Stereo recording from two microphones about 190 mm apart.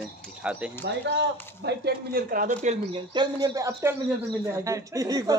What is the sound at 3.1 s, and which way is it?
Speech, 20° right (ahead or behind).